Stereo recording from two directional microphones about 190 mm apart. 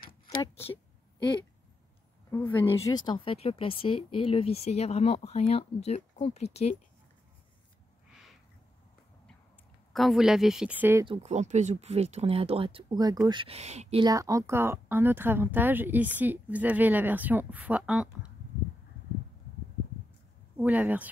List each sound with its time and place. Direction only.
2.3 s speech: 10° left (ahead or behind); by 6.8 s 35° left (ahead or behind)
9.9 s speech: centre (ahead or behind)
11.1 s speech: 35° right (ahead or behind)
14.0 s a woman's voice: 15° right (ahead or behind)
20.5 s a woman's voice: 10° right (ahead or behind)